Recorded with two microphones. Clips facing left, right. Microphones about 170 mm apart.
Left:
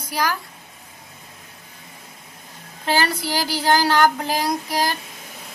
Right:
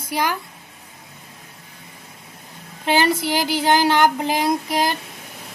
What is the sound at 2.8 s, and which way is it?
Speech, 20° right (ahead or behind).